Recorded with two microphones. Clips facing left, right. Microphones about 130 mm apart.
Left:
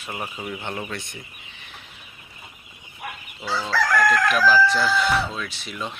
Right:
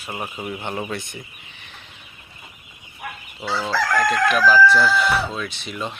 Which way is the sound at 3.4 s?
25° right (ahead or behind).